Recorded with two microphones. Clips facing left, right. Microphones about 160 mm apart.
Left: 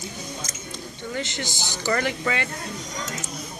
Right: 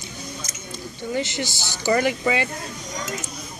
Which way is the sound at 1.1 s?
10° right (ahead or behind).